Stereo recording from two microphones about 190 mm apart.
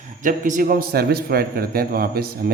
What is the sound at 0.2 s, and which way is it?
A man's voice, 45° right (ahead or behind).